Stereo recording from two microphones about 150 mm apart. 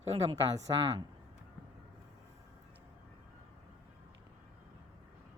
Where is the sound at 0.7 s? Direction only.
30° right (ahead or behind).